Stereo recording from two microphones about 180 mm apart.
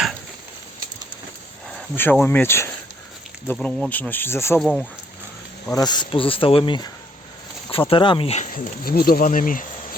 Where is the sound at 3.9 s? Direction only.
10° left (ahead or behind).